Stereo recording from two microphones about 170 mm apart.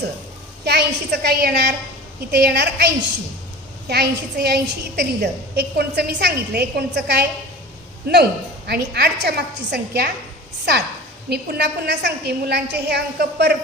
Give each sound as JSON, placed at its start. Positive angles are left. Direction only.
{"t": 0.6, "sound": "a woman's voice", "side_deg": -75}
{"t": 11.3, "sound": "a woman's voice", "side_deg": -80}